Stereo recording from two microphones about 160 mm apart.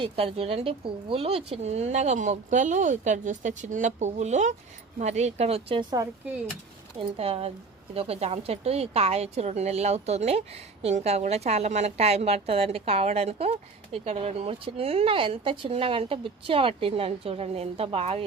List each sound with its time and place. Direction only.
0.0 s speech: 35° right (ahead or behind)
7.2 s speech: 40° right (ahead or behind)